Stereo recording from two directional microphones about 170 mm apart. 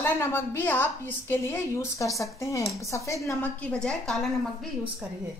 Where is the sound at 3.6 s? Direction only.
5° left (ahead or behind).